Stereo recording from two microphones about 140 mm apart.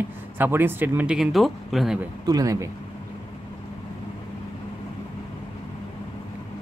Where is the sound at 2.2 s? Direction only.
25° right (ahead or behind).